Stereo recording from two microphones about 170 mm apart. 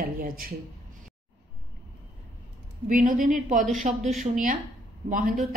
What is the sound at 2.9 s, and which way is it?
Speech, 50° right (ahead or behind).